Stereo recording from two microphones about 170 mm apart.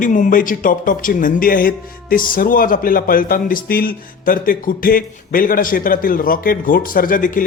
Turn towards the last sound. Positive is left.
turn(degrees=50)  # may be behind; listen again after turning